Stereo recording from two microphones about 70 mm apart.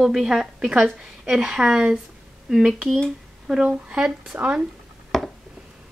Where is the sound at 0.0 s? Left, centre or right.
Centre.